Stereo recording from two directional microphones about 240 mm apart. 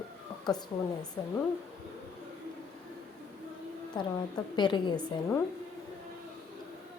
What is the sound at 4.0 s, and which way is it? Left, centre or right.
A woman's voice, centre.